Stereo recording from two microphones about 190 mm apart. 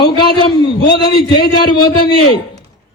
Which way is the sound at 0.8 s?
60° left (ahead or behind).